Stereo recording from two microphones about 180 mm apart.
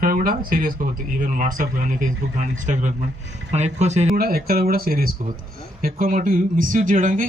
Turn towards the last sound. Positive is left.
turn(degrees=-45)  # may be behind; listen again after turning